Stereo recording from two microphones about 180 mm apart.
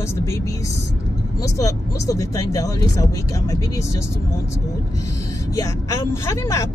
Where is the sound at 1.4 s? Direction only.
20° left (ahead or behind).